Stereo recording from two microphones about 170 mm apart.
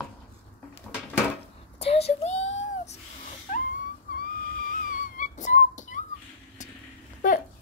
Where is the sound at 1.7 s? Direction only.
35° left (ahead or behind).